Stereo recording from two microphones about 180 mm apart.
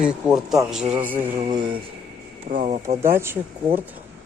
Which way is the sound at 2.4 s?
45° right (ahead or behind).